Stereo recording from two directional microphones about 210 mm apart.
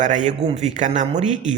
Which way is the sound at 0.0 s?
35° right (ahead or behind).